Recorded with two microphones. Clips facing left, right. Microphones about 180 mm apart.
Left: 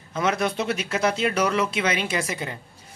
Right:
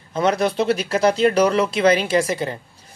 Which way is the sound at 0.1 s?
35° right (ahead or behind).